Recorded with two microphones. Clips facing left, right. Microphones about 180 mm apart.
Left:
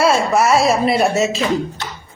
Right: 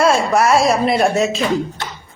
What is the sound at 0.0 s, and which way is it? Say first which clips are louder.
Speech: even; centre (ahead or behind).